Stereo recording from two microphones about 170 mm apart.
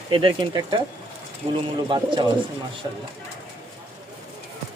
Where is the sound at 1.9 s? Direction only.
30° right (ahead or behind).